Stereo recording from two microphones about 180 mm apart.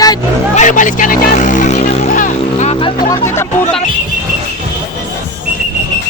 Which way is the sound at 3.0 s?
15° left (ahead or behind).